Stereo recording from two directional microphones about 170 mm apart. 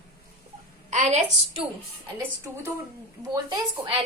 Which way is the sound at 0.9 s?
45° right (ahead or behind).